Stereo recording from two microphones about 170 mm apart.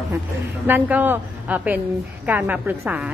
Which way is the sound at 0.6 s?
10° right (ahead or behind).